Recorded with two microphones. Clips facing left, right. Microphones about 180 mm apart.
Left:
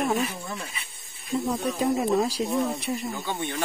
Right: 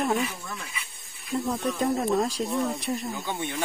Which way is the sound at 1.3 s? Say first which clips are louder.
Left 1 dB; centre (ahead or behind).